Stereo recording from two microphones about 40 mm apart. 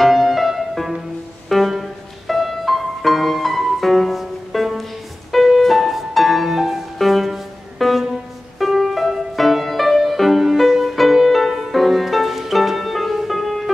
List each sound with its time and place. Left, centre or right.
0.0 s music: centre